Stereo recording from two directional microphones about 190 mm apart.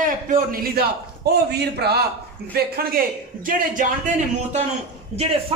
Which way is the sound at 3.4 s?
45° right (ahead or behind).